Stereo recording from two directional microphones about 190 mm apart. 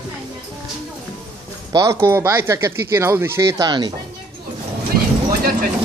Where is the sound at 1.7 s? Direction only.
15° right (ahead or behind).